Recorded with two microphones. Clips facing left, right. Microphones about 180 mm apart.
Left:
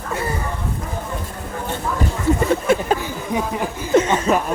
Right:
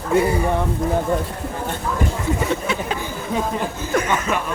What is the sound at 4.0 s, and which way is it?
Speech, 30° left (ahead or behind).